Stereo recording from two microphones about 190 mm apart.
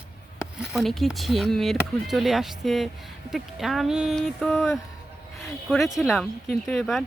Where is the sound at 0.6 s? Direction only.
Centre (ahead or behind).